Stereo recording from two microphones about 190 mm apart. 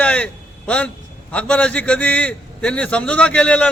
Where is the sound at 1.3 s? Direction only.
5° left (ahead or behind).